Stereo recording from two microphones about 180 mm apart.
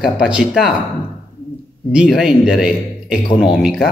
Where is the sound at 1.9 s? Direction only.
5° right (ahead or behind).